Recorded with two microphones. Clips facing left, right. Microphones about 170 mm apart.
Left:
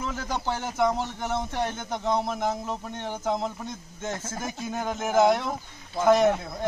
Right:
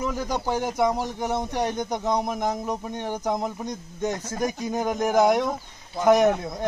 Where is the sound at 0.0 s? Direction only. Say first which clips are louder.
Right 4 dB; 10° right (ahead or behind).